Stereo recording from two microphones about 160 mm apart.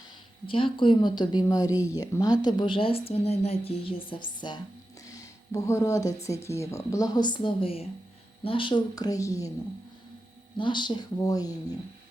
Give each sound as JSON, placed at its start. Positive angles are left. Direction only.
{"t": 0.4, "sound": "speech", "side_deg": 35}
{"t": 10.6, "sound": "speech", "side_deg": 30}